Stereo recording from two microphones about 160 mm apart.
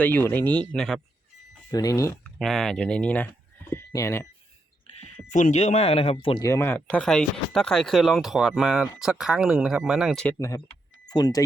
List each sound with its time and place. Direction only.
0.0 s speech: 10° left (ahead or behind)
1.7 s speech: 20° left (ahead or behind)
2.2 s speech: centre (ahead or behind); by 4.3 s 15° left (ahead or behind)
4.9 s speech: 45° left (ahead or behind)
6.4 s speech: 15° left (ahead or behind); by 10.2 s 5° right (ahead or behind)
10.3 s speech: 20° left (ahead or behind)